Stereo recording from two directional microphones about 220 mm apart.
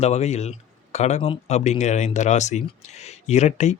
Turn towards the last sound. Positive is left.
turn(degrees=30)  # may be behind; listen again after turning